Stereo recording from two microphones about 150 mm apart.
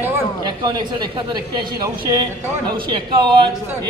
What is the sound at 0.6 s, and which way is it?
A man's voice, 30° right (ahead or behind).